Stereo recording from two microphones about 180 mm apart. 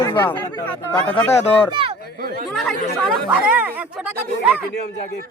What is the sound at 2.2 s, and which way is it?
Speech, 55° right (ahead or behind).